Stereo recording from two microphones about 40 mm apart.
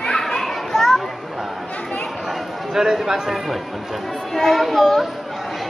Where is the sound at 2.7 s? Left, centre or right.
Centre.